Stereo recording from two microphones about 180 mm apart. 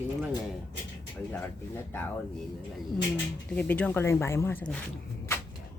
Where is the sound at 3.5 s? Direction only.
10° left (ahead or behind).